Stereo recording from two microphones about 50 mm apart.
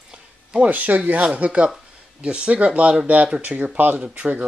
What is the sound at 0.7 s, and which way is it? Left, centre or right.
Speech, right.